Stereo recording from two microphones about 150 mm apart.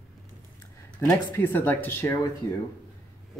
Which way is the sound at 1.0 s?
15° left (ahead or behind).